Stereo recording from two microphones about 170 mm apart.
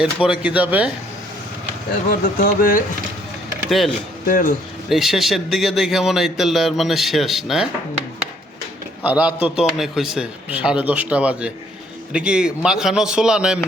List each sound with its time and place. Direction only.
0.0 s speech: 5° right (ahead or behind)
2.4 s speech: 55° left (ahead or behind)
3.7 s a man's voice: centre (ahead or behind)
4.3 s speech: 50° left (ahead or behind)
4.9 s a man's voice: centre (ahead or behind)
9.0 s a man's voice: 5° right (ahead or behind)